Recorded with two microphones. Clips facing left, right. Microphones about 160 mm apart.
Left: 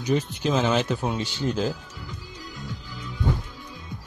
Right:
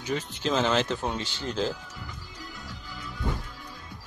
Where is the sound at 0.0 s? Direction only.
15° left (ahead or behind).